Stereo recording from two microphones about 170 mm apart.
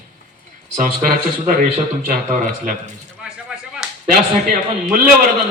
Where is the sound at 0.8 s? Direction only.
55° right (ahead or behind).